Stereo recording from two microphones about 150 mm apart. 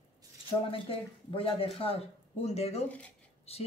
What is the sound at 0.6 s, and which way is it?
Speech, 35° left (ahead or behind).